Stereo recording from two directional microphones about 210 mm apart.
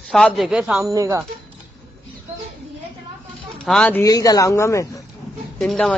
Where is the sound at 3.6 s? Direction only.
5° left (ahead or behind).